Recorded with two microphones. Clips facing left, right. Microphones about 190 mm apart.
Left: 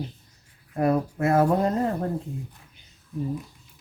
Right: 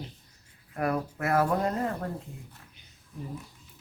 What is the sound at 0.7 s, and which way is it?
Speech, 25° left (ahead or behind).